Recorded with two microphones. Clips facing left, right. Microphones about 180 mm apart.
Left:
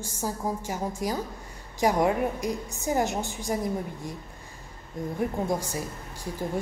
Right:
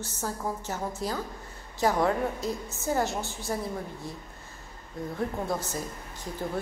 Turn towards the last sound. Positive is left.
turn(degrees=10)  # may be behind; listen again after turning